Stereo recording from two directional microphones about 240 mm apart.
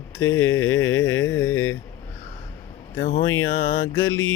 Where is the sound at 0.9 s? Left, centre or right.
Left.